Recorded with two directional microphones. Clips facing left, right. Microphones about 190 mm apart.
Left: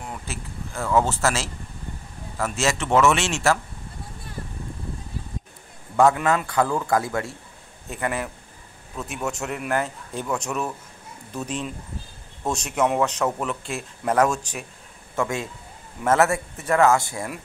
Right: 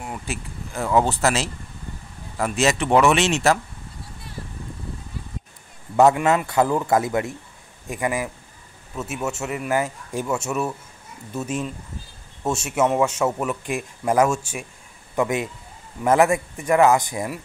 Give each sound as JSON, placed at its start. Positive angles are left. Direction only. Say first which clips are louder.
{"t": 0.0, "sound": "speech", "louder": "right 3 dB", "side_deg": -10}
{"t": 6.4, "sound": "speech", "louder": "right 3 dB", "side_deg": -20}